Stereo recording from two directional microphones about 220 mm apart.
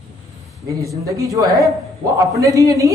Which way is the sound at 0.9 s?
15° right (ahead or behind).